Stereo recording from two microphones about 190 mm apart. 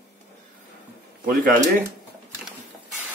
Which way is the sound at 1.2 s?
45° right (ahead or behind).